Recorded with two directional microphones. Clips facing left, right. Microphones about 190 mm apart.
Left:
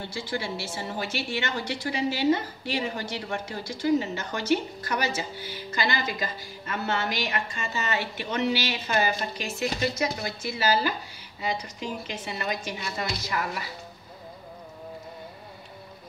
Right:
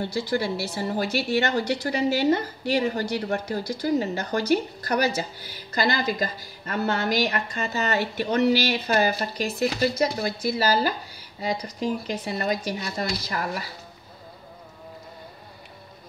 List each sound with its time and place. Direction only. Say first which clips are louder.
0.0 s a woman's voice: right 6 dB; 40° right (ahead or behind)